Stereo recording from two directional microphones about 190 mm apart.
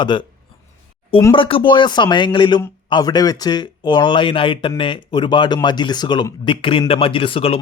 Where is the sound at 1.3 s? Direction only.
30° left (ahead or behind).